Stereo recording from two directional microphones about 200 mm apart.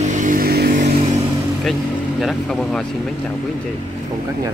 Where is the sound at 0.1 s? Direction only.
40° right (ahead or behind).